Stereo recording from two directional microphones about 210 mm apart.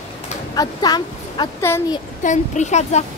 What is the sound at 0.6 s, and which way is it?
Speech, 20° left (ahead or behind).